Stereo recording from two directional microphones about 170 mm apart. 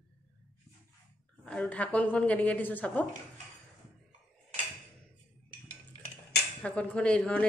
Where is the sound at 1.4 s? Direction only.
5° left (ahead or behind).